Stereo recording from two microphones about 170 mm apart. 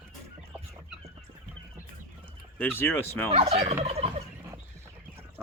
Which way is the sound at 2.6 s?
10° left (ahead or behind).